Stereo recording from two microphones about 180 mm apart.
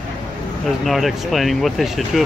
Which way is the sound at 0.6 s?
Centre (ahead or behind).